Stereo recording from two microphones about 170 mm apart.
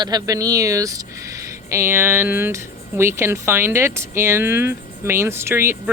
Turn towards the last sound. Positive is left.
turn(degrees=-15)  # may be behind; listen again after turning